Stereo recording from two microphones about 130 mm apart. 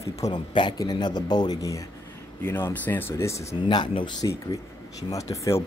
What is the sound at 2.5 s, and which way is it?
Speech, 15° left (ahead or behind).